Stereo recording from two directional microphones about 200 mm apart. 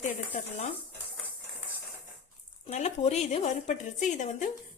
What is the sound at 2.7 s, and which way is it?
Speech, 35° left (ahead or behind).